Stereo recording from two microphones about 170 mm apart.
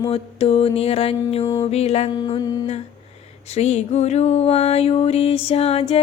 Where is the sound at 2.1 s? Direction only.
25° left (ahead or behind).